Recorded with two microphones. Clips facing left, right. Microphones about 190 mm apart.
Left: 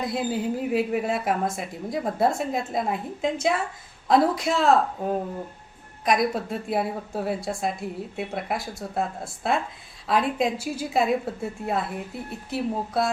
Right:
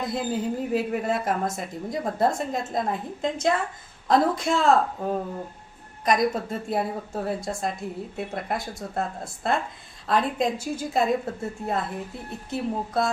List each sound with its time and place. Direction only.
0.0 s a woman's voice: centre (ahead or behind)